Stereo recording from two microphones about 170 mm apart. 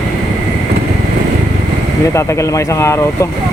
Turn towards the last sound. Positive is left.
turn(degrees=15)  # may be behind; listen again after turning